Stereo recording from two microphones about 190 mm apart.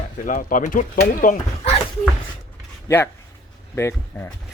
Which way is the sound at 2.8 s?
10° left (ahead or behind).